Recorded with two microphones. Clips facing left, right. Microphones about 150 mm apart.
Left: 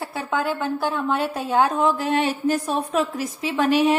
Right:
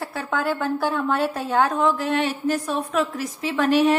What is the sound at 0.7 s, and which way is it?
Speech, 5° right (ahead or behind).